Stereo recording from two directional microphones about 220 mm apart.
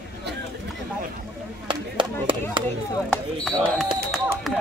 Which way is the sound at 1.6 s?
20° right (ahead or behind).